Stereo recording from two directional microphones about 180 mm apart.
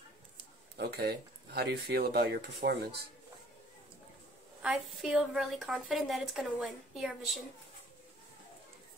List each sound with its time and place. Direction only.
0.7 s speech: 60° right (ahead or behind)
4.6 s a woman's voice: centre (ahead or behind)